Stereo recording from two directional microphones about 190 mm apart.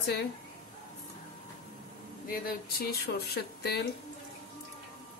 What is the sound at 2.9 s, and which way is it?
Speech, 60° left (ahead or behind).